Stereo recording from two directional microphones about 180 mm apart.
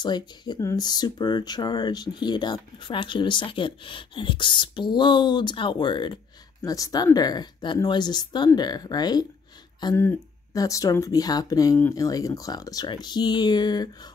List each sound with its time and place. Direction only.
0.0 s speech: 25° left (ahead or behind)